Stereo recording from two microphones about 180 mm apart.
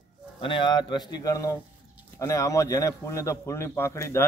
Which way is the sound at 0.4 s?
25° left (ahead or behind).